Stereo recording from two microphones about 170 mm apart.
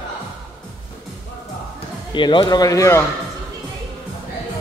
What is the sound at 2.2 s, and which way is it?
Speech, 25° left (ahead or behind).